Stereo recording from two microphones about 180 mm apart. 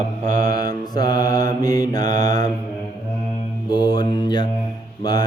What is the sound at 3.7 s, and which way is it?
Mantra, 25° left (ahead or behind).